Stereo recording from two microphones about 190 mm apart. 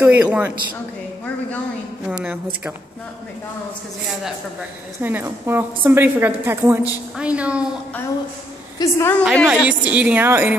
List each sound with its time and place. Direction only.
0.0 s a woman's voice: 5° right (ahead or behind)
2.0 s a woman's voice: 5° right (ahead or behind)
5.0 s a woman's voice: 10° right (ahead or behind)
8.7 s a woman's voice: 15° left (ahead or behind)
9.3 s a woman's voice: 5° left (ahead or behind)
9.6 s a woman's voice: 5° right (ahead or behind)